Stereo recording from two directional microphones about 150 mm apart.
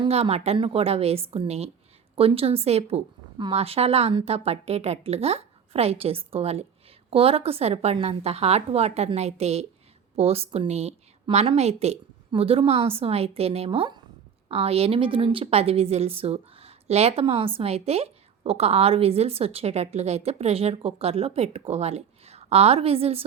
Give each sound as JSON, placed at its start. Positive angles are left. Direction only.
{"t": 0.0, "sound": "a woman's voice", "side_deg": -45}